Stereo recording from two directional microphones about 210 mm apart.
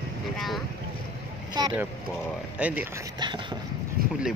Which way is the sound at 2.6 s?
5° right (ahead or behind).